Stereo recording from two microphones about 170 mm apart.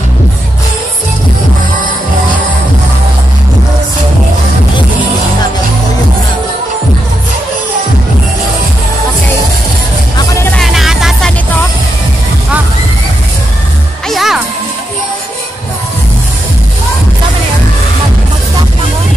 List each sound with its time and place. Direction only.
10.1 s music: 15° left (ahead or behind)
10.5 s music: centre (ahead or behind)
14.0 s music: centre (ahead or behind)